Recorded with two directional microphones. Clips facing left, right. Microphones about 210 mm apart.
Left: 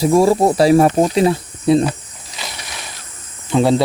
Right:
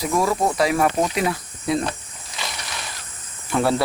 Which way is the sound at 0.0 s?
30° left (ahead or behind).